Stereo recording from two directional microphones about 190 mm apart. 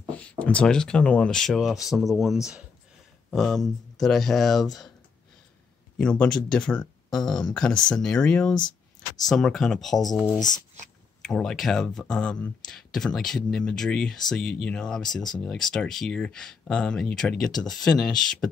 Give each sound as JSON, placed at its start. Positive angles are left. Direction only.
{"t": 0.2, "sound": "speech", "side_deg": 5}
{"t": 5.9, "sound": "speech", "side_deg": 5}
{"t": 8.5, "sound": "a sound", "side_deg": 20}
{"t": 9.3, "sound": "speech", "side_deg": 0}
{"t": 10.2, "sound": "speech", "side_deg": 15}
{"t": 11.2, "sound": "speech", "side_deg": 5}